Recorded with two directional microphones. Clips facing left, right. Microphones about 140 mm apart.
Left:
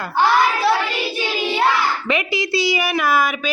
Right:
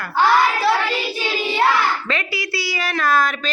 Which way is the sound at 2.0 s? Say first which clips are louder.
Left 4 dB; 20° left (ahead or behind).